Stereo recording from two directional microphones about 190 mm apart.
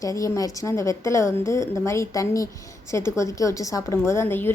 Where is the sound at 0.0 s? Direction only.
15° left (ahead or behind).